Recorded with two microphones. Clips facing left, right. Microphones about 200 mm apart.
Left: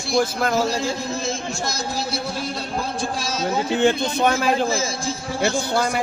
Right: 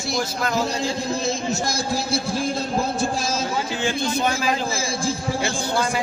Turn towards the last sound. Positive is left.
turn(degrees=55)  # may be behind; listen again after turning